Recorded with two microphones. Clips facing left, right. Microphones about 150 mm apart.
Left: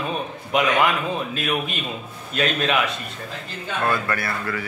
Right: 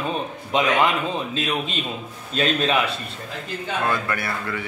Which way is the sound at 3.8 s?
20° right (ahead or behind).